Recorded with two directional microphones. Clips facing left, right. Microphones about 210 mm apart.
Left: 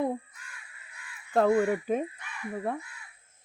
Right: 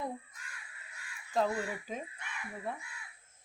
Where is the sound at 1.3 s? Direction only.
60° left (ahead or behind).